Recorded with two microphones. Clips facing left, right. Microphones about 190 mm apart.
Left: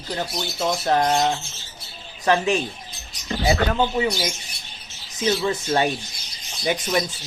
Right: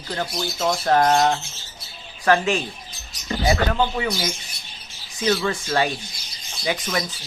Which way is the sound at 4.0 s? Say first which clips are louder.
Left 3 dB; 20° left (ahead or behind).